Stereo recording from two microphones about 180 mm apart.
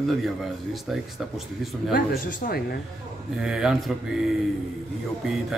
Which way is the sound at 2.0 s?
50° left (ahead or behind).